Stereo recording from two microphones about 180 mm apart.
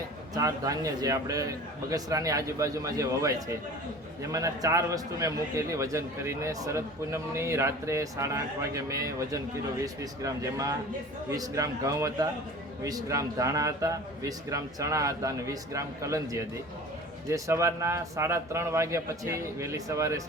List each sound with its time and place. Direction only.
0.3 s a man's voice: 20° right (ahead or behind)